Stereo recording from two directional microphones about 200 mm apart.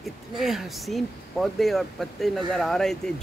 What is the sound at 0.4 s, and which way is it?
Speech, centre (ahead or behind).